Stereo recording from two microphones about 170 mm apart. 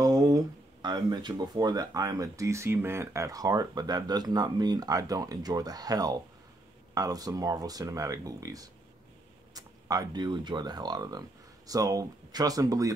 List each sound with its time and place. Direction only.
0.0 s speech: 20° right (ahead or behind)